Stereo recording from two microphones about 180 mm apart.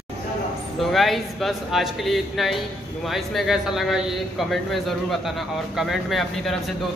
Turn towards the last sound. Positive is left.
turn(degrees=0)  # may be behind; listen again after turning